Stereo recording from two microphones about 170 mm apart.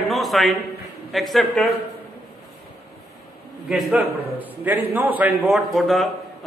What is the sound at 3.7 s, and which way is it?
A man's voice, centre (ahead or behind).